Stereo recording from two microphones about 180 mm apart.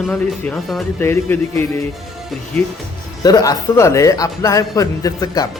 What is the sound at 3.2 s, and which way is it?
Speech, 20° left (ahead or behind).